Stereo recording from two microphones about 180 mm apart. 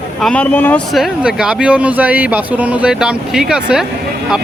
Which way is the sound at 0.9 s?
Centre (ahead or behind).